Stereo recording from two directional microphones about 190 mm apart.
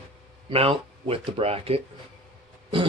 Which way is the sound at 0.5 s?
30° right (ahead or behind).